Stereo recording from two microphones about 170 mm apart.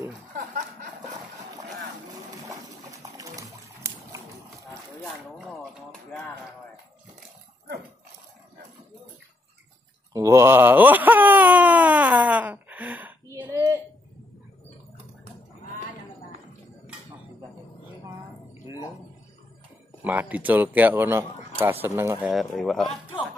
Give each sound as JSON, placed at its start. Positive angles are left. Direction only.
{"t": 0.4, "sound": "snicker", "side_deg": -50}
{"t": 2.4, "sound": "a sound", "side_deg": -20}
{"t": 5.4, "sound": "jingle bell", "side_deg": 0}
{"t": 10.1, "sound": "wail", "side_deg": -15}
{"t": 20.0, "sound": "a man's voice", "side_deg": -10}
{"t": 22.3, "sound": "speech", "side_deg": 0}